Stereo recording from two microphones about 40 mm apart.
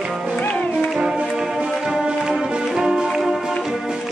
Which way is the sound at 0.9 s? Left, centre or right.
Centre.